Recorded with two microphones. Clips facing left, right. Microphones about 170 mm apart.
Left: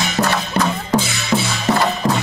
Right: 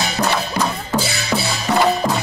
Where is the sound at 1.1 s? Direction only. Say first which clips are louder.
Left 2 dB; 35° right (ahead or behind).